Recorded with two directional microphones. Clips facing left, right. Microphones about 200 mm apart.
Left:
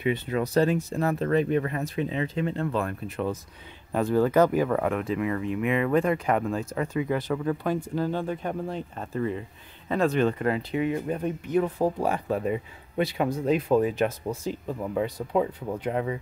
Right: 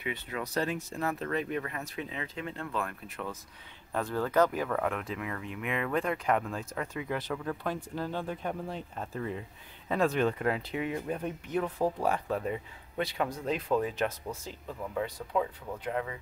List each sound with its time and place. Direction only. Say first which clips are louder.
0.0 s speech: left 10 dB; 30° left (ahead or behind)
3.9 s speech: left 7 dB; 15° left (ahead or behind)
15.3 s speech: left 6 dB; 30° left (ahead or behind)